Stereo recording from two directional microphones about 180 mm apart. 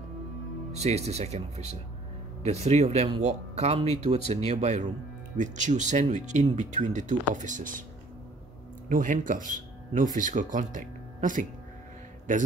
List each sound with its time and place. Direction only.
0.7 s speech: 35° right (ahead or behind)
8.8 s speech: 45° right (ahead or behind)